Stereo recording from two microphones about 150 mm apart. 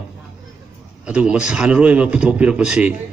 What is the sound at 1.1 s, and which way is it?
Speech, 10° right (ahead or behind).